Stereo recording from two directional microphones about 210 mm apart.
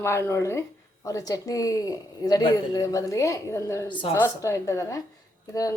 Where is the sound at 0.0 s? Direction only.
15° left (ahead or behind).